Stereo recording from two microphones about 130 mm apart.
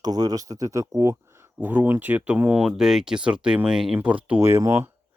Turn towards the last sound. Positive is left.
turn(degrees=-20)  # may be behind; listen again after turning